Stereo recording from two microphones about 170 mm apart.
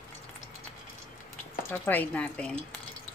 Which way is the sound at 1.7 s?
10° left (ahead or behind).